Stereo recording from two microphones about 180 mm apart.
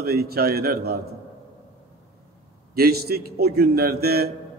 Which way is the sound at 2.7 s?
60° right (ahead or behind).